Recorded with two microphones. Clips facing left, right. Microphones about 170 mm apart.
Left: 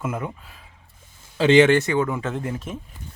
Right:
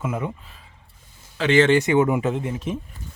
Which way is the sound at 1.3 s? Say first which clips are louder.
Left 4 dB; 30° left (ahead or behind).